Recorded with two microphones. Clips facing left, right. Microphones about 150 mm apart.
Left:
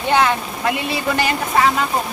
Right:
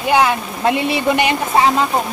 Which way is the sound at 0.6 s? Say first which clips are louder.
Right 7 dB; 25° right (ahead or behind).